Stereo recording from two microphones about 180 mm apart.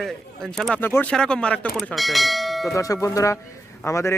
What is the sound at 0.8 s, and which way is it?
Speech, 10° left (ahead or behind).